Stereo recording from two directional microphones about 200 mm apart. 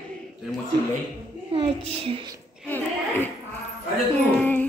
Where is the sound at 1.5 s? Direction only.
25° right (ahead or behind).